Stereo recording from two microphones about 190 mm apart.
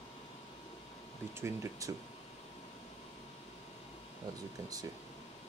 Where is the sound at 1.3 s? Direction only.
15° right (ahead or behind).